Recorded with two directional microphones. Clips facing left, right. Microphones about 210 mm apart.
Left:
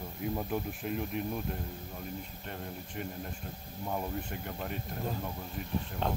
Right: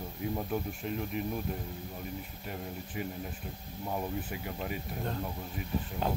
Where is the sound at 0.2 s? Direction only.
Centre (ahead or behind).